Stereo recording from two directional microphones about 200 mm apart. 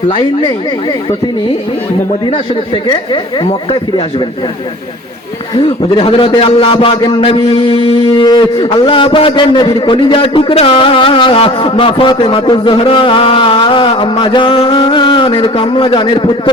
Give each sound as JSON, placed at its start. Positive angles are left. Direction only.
{"t": 0.1, "sound": "a man's voice", "side_deg": 25}
{"t": 2.8, "sound": "a man's voice", "side_deg": 25}
{"t": 5.5, "sound": "a man's voice", "side_deg": 30}